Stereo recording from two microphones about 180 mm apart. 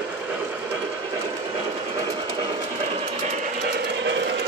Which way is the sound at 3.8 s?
80° right.